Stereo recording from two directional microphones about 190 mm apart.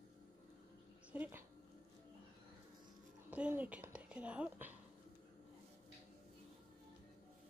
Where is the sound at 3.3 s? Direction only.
5° right (ahead or behind).